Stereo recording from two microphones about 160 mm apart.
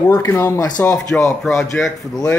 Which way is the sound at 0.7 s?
5° left (ahead or behind).